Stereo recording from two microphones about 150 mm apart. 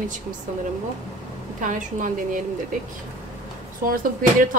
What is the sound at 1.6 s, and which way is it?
Speech, 60° right (ahead or behind).